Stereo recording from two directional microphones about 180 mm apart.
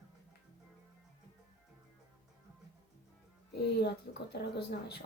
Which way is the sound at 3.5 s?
65° left (ahead or behind).